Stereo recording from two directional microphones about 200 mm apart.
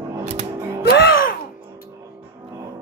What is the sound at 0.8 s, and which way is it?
Music, 55° left (ahead or behind).